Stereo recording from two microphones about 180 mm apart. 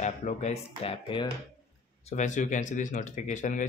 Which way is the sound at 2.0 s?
40° left (ahead or behind).